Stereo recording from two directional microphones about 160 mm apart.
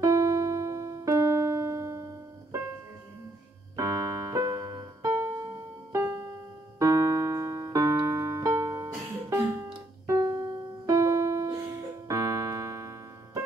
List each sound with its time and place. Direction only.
0.0 s piano: 20° right (ahead or behind)
3.7 s keyboard: 20° right (ahead or behind)
5.9 s music: 15° right (ahead or behind)
6.8 s keyboard: 20° right (ahead or behind)
10.9 s music: 20° right (ahead or behind)
12.1 s keyboard: 20° right (ahead or behind)